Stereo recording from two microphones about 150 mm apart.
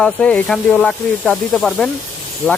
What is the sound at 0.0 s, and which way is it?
Speech, 5° left (ahead or behind).